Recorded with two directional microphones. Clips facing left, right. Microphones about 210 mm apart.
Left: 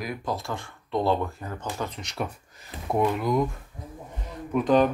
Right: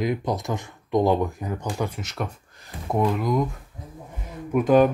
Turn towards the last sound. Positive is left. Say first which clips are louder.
# right 3 dB
turn(degrees=-10)  # may be behind; listen again after turning